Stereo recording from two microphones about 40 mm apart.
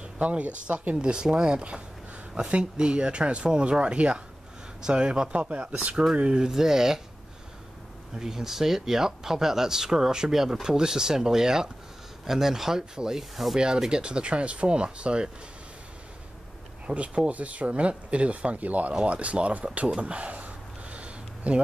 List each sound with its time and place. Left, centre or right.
0.0 s speech: right
6.4 s speech: centre
8.2 s speech: centre
16.8 s speech: right
20.0 s a sound: right